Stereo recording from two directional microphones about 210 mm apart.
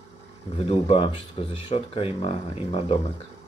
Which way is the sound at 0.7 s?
30° left (ahead or behind).